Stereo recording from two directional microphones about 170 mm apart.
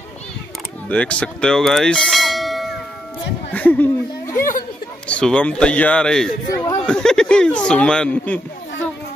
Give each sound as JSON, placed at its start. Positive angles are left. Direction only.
{"t": 0.8, "sound": "speech", "side_deg": 5}
{"t": 3.5, "sound": "a sound", "side_deg": 10}
{"t": 5.0, "sound": "a man's voice", "side_deg": 5}
{"t": 6.5, "sound": "a man's voice", "side_deg": 15}
{"t": 6.9, "sound": "speech", "side_deg": 5}